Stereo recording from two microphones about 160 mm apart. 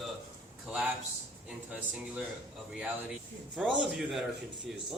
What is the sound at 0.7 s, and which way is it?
A man's voice, 10° right (ahead or behind).